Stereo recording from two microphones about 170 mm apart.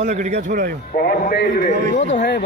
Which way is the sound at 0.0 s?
40° right (ahead or behind).